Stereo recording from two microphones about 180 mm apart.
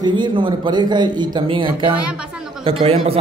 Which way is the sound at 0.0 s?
25° right (ahead or behind).